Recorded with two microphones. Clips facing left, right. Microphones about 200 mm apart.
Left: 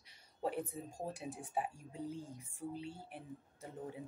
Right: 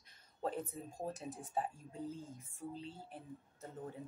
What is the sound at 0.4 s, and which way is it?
A woman's voice, 15° left (ahead or behind).